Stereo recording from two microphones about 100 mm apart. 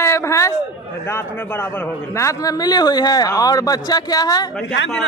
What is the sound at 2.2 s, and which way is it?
Speech, 35° left (ahead or behind).